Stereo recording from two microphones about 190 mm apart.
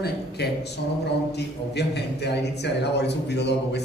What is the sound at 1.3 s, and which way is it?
A man's voice, 60° left (ahead or behind).